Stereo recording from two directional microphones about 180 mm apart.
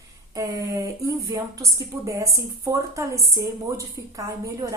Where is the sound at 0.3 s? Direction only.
20° right (ahead or behind).